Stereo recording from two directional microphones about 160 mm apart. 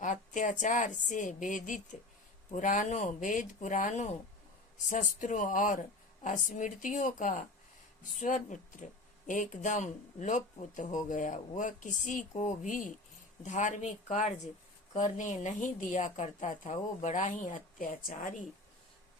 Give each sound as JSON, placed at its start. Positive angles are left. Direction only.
{"t": 0.0, "sound": "speech", "side_deg": 50}